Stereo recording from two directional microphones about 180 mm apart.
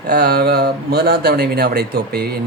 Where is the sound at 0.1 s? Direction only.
55° right (ahead or behind).